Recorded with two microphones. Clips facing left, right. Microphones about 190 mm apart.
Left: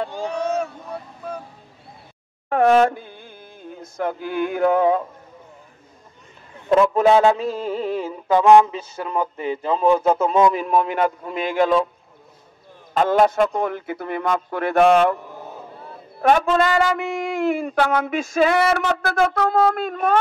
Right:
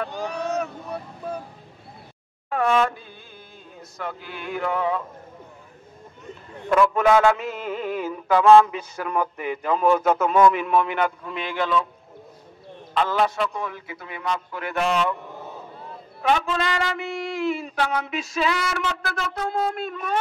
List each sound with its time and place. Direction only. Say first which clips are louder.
0.1 s vehicle: left 3 dB; 20° right (ahead or behind)
2.6 s a sound: left 6 dB; 40° left (ahead or behind)
3.8 s speech: left 8 dB; 50° left (ahead or behind)
6.7 s a man's voice: left 3 dB; 30° left (ahead or behind)
8.3 s a sound: left 1 dB; 15° left (ahead or behind)
8.6 s a man's voice: left 1 dB; 25° left (ahead or behind)
10.5 s a man's voice: left 2 dB; 35° left (ahead or behind)
12.9 s speech: left 6 dB; 45° left (ahead or behind)
16.2 s speech: left 6 dB; 50° left (ahead or behind)
19.4 s a sound: left 5 dB; 70° left (ahead or behind)
19.7 s speech: left 7 dB; 50° left (ahead or behind)